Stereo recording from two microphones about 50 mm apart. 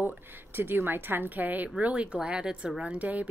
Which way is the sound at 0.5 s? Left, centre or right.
Right.